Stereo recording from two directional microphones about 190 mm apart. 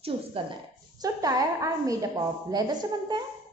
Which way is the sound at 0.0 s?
30° right (ahead or behind).